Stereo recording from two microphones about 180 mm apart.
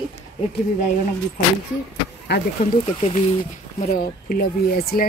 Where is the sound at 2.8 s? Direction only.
35° left (ahead or behind).